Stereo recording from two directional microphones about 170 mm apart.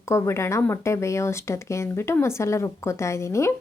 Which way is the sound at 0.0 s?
15° left (ahead or behind).